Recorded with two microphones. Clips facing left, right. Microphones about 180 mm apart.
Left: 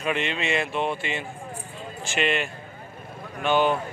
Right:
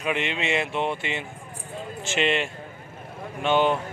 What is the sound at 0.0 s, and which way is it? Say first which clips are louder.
A man's voice: even; 15° right (ahead or behind).